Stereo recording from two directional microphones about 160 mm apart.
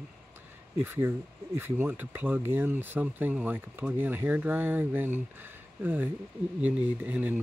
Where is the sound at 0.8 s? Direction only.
15° right (ahead or behind).